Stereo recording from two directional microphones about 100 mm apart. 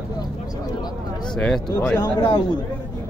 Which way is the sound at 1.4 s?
5° left (ahead or behind).